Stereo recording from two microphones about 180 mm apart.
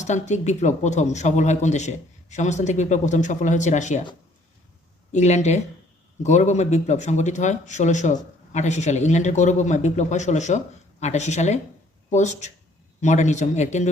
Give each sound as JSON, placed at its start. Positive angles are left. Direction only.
{"t": 0.0, "sound": "speech", "side_deg": 40}
{"t": 5.1, "sound": "speech", "side_deg": 40}